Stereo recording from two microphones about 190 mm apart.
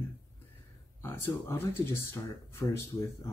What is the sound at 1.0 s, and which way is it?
Speech, 10° left (ahead or behind).